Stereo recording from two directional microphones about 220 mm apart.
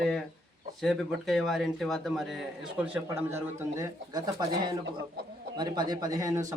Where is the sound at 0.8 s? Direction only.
Centre (ahead or behind).